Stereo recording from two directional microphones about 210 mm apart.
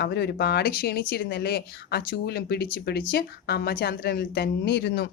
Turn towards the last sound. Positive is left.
turn(degrees=50)  # may be behind; listen again after turning